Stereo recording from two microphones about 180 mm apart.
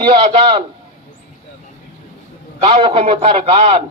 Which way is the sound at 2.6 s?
35° right (ahead or behind).